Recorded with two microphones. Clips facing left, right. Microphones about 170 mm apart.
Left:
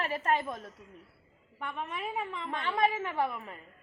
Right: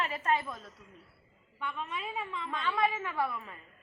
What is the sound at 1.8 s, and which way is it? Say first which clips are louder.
Speech: left 4 dB; 55° left (ahead or behind).